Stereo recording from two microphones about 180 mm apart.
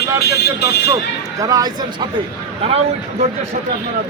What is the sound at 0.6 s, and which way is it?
Speech, 15° right (ahead or behind).